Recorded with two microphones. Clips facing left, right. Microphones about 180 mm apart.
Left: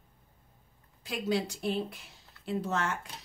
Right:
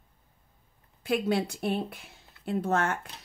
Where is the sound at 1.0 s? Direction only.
60° right (ahead or behind).